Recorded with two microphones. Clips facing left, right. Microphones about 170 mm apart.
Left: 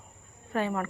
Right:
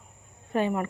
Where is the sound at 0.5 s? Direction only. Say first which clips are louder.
Right 3 dB; 20° right (ahead or behind).